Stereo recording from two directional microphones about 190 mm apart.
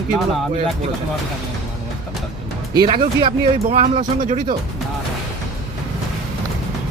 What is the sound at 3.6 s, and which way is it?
Speech, 35° right (ahead or behind).